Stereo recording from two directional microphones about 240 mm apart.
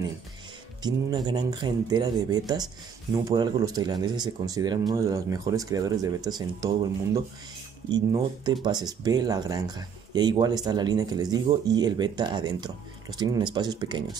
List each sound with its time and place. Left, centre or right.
0.8 s speech: centre
7.9 s speech: centre